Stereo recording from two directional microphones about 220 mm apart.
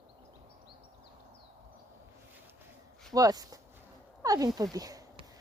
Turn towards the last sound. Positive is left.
turn(degrees=-15)  # may be behind; listen again after turning